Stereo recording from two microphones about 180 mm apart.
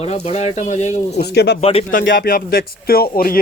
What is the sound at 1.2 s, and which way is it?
Speech, 70° left (ahead or behind).